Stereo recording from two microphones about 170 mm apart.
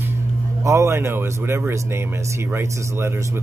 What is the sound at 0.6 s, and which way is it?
Speech, 15° right (ahead or behind).